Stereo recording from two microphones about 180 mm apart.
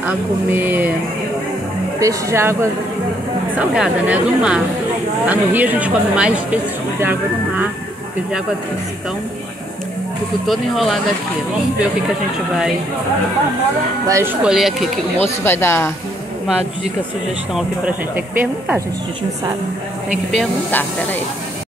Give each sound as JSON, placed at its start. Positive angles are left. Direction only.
{"t": 0.0, "sound": "speech", "side_deg": -10}
{"t": 2.0, "sound": "speech", "side_deg": -15}
{"t": 10.4, "sound": "speech", "side_deg": 0}
{"t": 14.0, "sound": "speech", "side_deg": -15}
{"t": 14.4, "sound": "speech", "side_deg": 0}
{"t": 15.2, "sound": "speech", "side_deg": 10}
{"t": 17.6, "sound": "speech", "side_deg": -10}
{"t": 20.2, "sound": "speech", "side_deg": 5}